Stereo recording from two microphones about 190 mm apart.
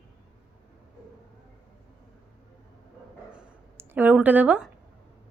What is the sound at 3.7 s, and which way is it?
Speech, 10° right (ahead or behind).